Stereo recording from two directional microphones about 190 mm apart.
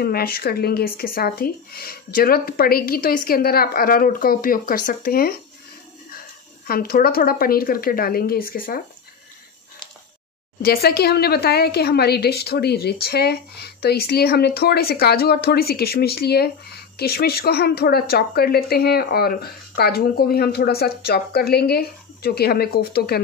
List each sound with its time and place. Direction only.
0.0 s speech: 50° left (ahead or behind)
6.7 s speech: 50° left (ahead or behind)
10.6 s speech: 55° left (ahead or behind)